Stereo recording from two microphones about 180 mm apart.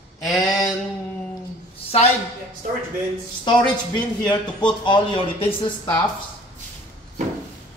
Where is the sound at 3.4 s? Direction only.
25° left (ahead or behind).